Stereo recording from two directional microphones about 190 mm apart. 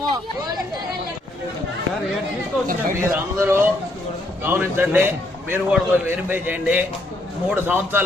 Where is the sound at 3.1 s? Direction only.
15° right (ahead or behind).